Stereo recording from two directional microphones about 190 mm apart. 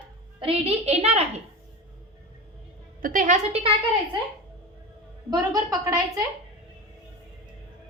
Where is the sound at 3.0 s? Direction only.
45° right (ahead or behind); by 4.2 s 30° right (ahead or behind).